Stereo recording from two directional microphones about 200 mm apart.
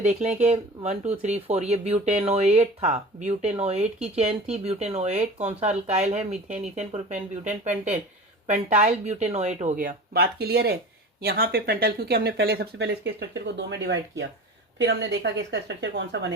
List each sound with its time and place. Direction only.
0.0 s speech: 35° right (ahead or behind)
8.8 s speech: 35° right (ahead or behind); by 16.3 s 60° right (ahead or behind)